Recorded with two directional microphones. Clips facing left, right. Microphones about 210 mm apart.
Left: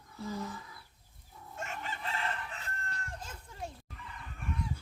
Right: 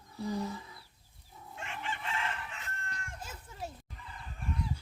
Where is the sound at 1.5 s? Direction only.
40° left (ahead or behind).